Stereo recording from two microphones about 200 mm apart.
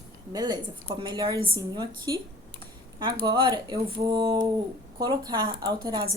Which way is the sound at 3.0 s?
20° right (ahead or behind).